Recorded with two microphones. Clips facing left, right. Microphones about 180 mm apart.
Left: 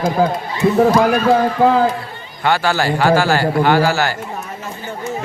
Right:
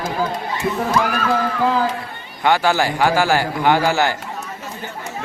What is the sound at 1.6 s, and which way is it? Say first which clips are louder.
Speech: left 5 dB; 55° left (ahead or behind).